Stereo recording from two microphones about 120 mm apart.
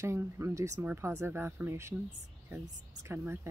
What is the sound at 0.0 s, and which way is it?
Speech, 25° right (ahead or behind).